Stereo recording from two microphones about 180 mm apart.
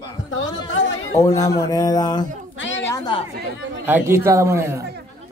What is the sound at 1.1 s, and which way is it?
A man's voice, 15° left (ahead or behind).